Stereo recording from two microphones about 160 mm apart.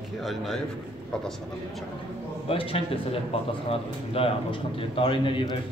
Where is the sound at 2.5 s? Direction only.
35° left (ahead or behind).